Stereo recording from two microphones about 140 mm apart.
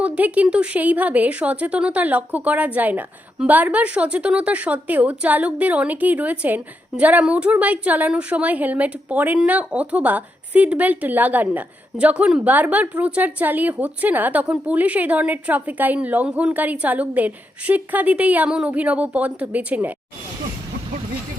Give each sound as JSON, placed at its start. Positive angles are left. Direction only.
{"t": 0.0, "sound": "speech", "side_deg": -10}